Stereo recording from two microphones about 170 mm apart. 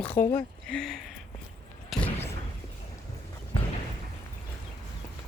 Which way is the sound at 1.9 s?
Centre (ahead or behind).